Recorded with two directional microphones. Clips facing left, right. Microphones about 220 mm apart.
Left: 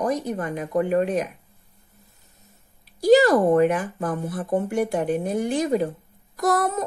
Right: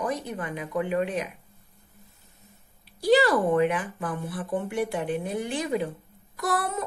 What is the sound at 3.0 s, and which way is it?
A woman's voice, 45° left (ahead or behind).